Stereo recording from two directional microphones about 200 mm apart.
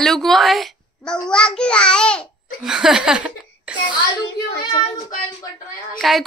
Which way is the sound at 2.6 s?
5° right (ahead or behind).